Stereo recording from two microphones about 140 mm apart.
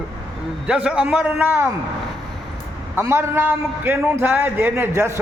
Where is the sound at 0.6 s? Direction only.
10° right (ahead or behind).